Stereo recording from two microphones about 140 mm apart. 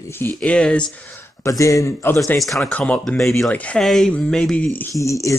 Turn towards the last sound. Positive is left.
turn(degrees=20)  # may be behind; listen again after turning